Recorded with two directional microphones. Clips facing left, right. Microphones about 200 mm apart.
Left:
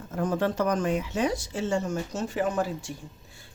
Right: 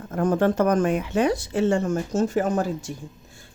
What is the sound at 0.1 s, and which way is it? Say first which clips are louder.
Speech: right 6 dB; 55° right (ahead or behind).